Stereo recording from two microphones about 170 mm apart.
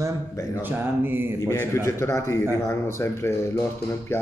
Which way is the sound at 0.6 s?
10° right (ahead or behind).